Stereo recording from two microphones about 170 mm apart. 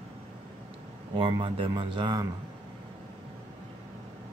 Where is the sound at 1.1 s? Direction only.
30° right (ahead or behind).